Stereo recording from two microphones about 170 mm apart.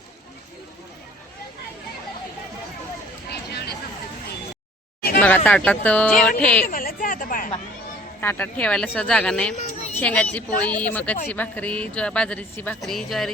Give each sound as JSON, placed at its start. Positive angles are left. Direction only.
{"t": 5.2, "sound": "a woman's voice", "side_deg": 5}
{"t": 6.7, "sound": "a sound", "side_deg": 55}
{"t": 8.2, "sound": "a woman's voice", "side_deg": 10}